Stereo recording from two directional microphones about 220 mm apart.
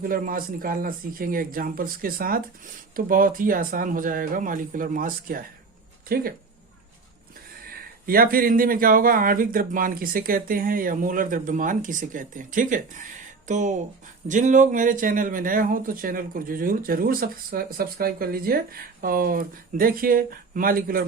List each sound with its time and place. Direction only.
0.0 s speech: 40° right (ahead or behind)
8.0 s speech: 40° right (ahead or behind)